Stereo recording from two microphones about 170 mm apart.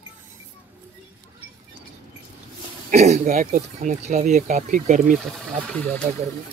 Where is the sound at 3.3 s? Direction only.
55° right (ahead or behind).